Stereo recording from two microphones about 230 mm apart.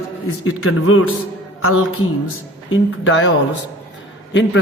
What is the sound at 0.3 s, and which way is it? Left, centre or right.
Speech, left.